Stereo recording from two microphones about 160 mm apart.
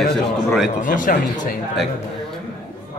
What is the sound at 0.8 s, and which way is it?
Speech, 55° left (ahead or behind).